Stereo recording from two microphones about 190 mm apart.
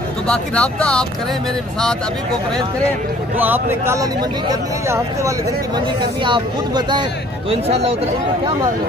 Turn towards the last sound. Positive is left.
turn(degrees=-30)  # may be behind; listen again after turning